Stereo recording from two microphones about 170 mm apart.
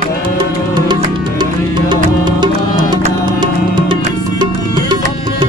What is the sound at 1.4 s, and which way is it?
Music, 25° right (ahead or behind).